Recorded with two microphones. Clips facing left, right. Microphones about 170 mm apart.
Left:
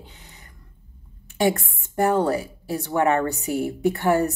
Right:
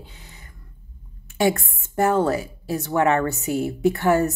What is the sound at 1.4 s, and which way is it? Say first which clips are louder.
Speech: right 1 dB; 20° left (ahead or behind).